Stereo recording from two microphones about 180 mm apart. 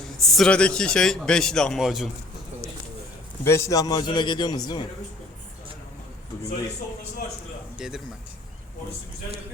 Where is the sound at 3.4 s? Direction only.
15° left (ahead or behind).